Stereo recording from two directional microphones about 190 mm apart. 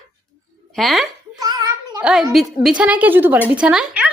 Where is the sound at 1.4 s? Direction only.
20° right (ahead or behind).